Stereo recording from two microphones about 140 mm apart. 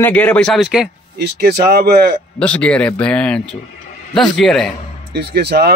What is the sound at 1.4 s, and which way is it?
Speech, 90° right.